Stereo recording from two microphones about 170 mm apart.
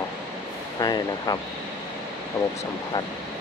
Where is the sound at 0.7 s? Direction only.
25° left (ahead or behind).